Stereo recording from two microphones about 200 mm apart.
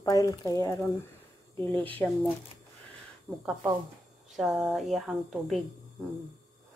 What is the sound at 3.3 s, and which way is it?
Speech, centre (ahead or behind).